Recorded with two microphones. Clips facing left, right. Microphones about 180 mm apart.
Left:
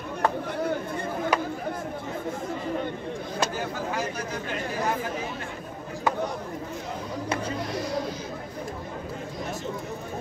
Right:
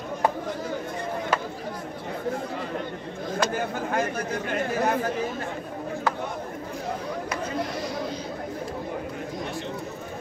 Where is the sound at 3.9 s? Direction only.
55° right (ahead or behind).